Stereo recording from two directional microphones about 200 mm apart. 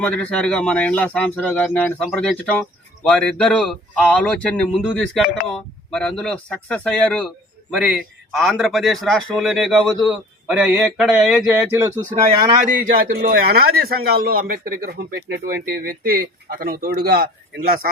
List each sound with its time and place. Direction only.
0.0 s speech: 5° left (ahead or behind); by 12.0 s 10° right (ahead or behind)
13.1 s a man's voice: 45° right (ahead or behind)